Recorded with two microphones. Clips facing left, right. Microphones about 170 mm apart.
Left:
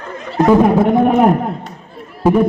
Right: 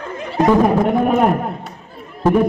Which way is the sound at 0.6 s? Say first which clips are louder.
Left 3 dB; 20° left (ahead or behind).